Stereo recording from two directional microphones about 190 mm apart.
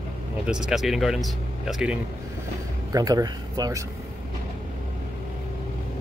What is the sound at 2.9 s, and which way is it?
Speech, 20° right (ahead or behind).